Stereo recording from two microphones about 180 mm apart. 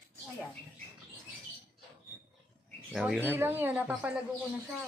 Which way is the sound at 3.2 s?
10° right (ahead or behind).